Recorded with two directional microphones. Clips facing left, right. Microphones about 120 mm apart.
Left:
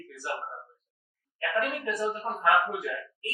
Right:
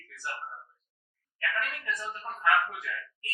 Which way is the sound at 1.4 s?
20° left (ahead or behind).